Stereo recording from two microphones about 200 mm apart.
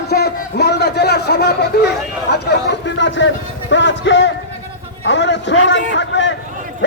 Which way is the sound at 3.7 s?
65° left (ahead or behind).